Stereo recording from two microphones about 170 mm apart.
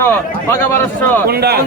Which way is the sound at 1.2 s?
65° right (ahead or behind).